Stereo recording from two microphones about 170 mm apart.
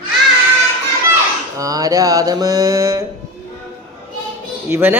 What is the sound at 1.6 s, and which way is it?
Mantra, 20° right (ahead or behind).